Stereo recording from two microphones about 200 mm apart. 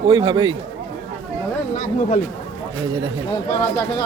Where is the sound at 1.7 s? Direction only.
40° left (ahead or behind).